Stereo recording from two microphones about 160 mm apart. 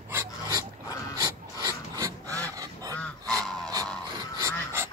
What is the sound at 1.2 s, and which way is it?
Filing, 25° right (ahead or behind).